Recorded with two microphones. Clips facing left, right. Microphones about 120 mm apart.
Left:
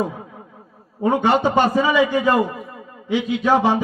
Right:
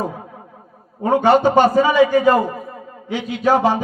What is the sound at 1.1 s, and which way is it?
A man's voice, 40° right (ahead or behind).